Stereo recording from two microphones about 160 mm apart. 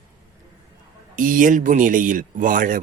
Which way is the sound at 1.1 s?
55° right (ahead or behind).